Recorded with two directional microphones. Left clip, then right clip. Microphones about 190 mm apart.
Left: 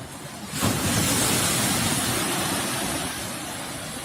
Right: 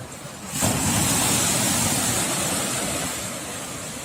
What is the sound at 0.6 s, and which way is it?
Vehicle, 60° right (ahead or behind).